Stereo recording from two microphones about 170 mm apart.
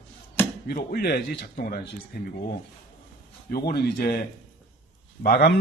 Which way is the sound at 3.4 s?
60° left (ahead or behind).